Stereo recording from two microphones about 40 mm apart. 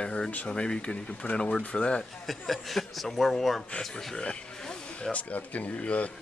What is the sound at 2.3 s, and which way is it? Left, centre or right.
A man's voice, centre.